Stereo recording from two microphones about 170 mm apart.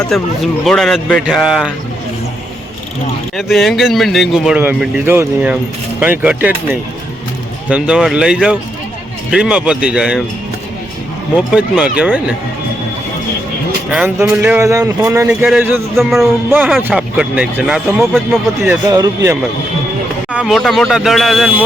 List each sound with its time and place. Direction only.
0.1 s speech: centre (ahead or behind)
3.3 s speech: centre (ahead or behind)
7.7 s speech: 5° right (ahead or behind)
11.5 s speech: 5° right (ahead or behind)
13.9 s speech: 10° right (ahead or behind)
18.9 s speech: 20° right (ahead or behind)
20.3 s speech: centre (ahead or behind)